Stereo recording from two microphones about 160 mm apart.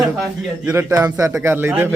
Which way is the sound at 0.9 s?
20° right (ahead or behind).